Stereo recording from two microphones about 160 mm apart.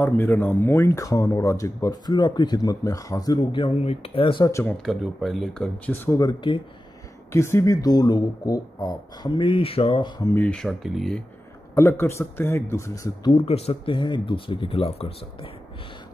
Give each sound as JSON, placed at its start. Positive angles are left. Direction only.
{"t": 0.0, "sound": "speech", "side_deg": 10}
{"t": 4.5, "sound": "a man's voice", "side_deg": 15}
{"t": 4.8, "sound": "speech", "side_deg": 0}
{"t": 6.0, "sound": "speech", "side_deg": 25}
{"t": 10.3, "sound": "speech", "side_deg": 5}
{"t": 11.7, "sound": "a man's voice", "side_deg": 15}
{"t": 13.3, "sound": "speech", "side_deg": 40}